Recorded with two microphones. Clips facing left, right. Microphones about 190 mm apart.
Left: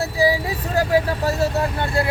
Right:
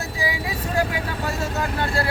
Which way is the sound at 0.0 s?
35° left (ahead or behind).